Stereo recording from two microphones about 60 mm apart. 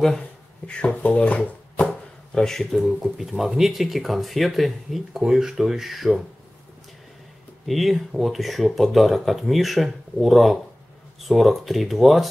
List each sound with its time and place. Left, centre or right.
0.7 s speech: centre
2.3 s speech: centre
7.6 s speech: centre